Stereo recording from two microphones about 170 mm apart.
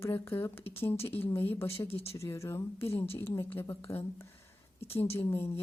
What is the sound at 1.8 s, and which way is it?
Speech, 35° left (ahead or behind).